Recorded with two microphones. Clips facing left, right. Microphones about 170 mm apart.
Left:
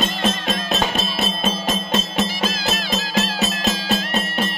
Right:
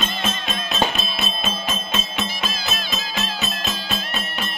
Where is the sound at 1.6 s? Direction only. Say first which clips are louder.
Left 5 dB; 40° left (ahead or behind).